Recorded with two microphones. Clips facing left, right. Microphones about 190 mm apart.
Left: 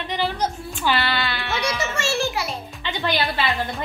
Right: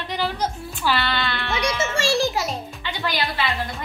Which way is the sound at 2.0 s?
35° right (ahead or behind).